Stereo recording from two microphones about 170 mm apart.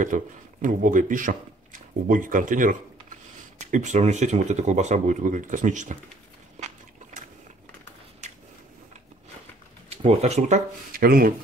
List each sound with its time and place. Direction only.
0.0 s speech: 50° right (ahead or behind)
9.8 s speech: 40° right (ahead or behind)
10.9 s speech: 60° right (ahead or behind)